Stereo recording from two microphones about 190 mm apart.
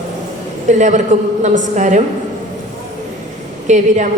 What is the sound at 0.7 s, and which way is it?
A woman's voice, 40° right (ahead or behind).